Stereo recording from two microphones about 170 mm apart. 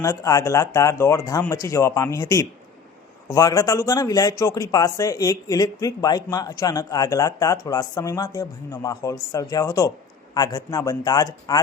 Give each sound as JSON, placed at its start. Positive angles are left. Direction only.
{"t": 0.0, "sound": "speech", "side_deg": 20}